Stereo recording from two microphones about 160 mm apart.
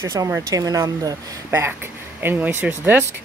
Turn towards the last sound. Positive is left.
turn(degrees=-10)  # may be behind; listen again after turning